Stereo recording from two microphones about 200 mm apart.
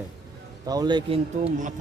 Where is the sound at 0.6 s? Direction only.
20° right (ahead or behind).